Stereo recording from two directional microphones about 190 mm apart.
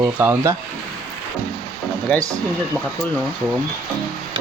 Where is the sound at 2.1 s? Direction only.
5° left (ahead or behind).